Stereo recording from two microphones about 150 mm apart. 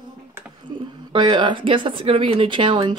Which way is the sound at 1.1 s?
30° right (ahead or behind).